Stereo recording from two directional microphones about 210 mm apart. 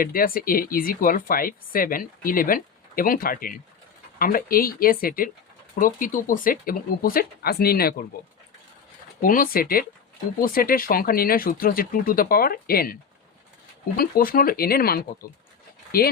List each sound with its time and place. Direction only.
0.0 s speech: 45° left (ahead or behind)
9.2 s speech: 40° left (ahead or behind)